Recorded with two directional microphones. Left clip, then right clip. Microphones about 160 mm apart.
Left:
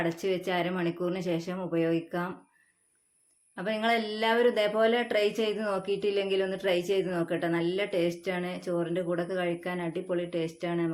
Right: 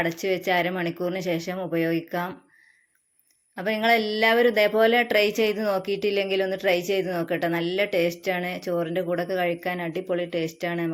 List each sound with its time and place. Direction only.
0.0 s speech: 25° right (ahead or behind)
3.5 s speech: 25° right (ahead or behind)